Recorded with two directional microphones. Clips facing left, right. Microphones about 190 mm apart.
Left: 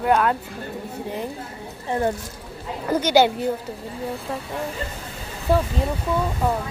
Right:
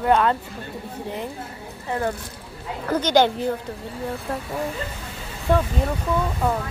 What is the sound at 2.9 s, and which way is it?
Speech, 10° left (ahead or behind).